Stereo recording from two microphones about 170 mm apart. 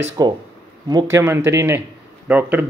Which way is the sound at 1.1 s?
15° right (ahead or behind).